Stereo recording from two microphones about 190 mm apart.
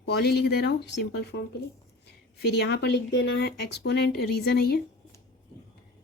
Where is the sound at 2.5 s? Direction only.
60° left (ahead or behind).